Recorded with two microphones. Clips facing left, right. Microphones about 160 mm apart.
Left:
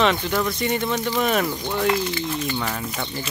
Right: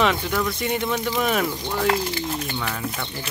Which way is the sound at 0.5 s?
5° right (ahead or behind).